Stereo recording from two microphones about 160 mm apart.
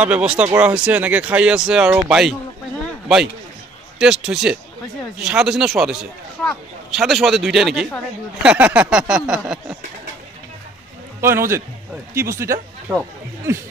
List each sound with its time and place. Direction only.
0.0 s speech: 5° right (ahead or behind)
4.0 s speech: 5° right (ahead or behind)
7.0 s speech: centre (ahead or behind)
11.1 s a man's voice: 15° right (ahead or behind)